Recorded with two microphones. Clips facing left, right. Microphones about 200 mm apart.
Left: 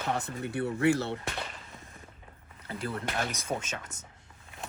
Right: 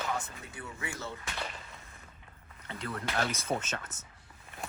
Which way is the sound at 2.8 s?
30° left (ahead or behind).